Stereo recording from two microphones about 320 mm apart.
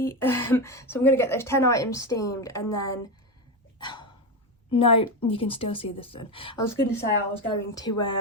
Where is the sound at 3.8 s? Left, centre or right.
Centre.